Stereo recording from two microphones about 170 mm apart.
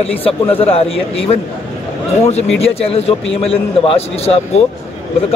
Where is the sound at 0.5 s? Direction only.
35° left (ahead or behind).